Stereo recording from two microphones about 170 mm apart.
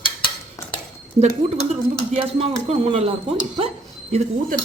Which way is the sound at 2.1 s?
35° right (ahead or behind).